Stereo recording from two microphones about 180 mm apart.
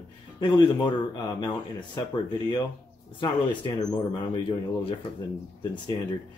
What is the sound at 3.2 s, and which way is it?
Speech, 25° left (ahead or behind).